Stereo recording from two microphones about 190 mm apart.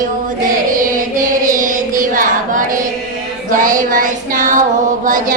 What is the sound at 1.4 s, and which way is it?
Child singing, 45° right (ahead or behind).